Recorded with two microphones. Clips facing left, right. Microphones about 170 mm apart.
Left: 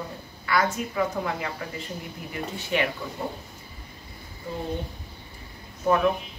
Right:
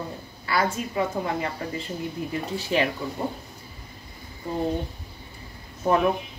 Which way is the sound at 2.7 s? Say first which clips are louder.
Right 2 dB; 35° right (ahead or behind).